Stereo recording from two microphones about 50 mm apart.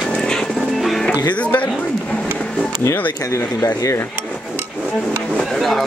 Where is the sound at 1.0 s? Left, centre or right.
Left.